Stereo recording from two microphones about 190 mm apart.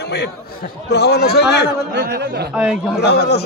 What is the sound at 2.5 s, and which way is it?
Speech, 5° right (ahead or behind).